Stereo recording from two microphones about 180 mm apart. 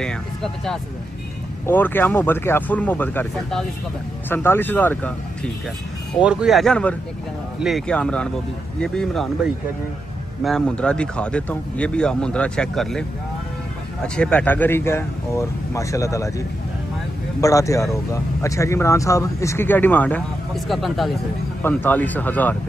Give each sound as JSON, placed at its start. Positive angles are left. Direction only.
{"t": 0.0, "sound": "speech", "side_deg": 5}
{"t": 6.2, "sound": "speech", "side_deg": 0}
{"t": 14.0, "sound": "speech", "side_deg": 5}